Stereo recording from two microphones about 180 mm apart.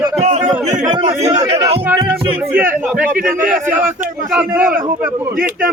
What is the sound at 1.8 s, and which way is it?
Speech, 15° right (ahead or behind).